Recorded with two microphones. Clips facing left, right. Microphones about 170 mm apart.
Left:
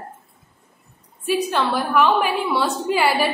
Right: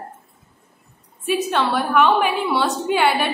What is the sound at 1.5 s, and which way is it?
A woman's voice, centre (ahead or behind).